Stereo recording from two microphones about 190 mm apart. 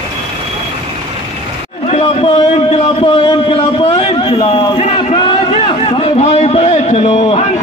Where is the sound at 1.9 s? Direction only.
30° left (ahead or behind).